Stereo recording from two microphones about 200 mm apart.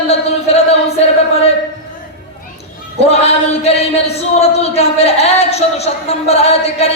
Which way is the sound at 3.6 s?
30° left (ahead or behind).